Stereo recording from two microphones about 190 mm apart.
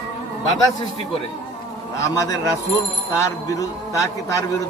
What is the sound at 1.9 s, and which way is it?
A man's voice, 15° left (ahead or behind).